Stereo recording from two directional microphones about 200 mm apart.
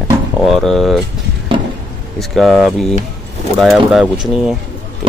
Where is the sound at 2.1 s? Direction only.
Centre (ahead or behind).